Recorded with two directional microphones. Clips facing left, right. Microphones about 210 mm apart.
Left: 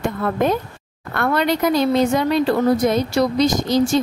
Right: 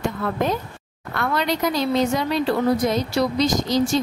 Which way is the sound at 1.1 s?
55° left (ahead or behind).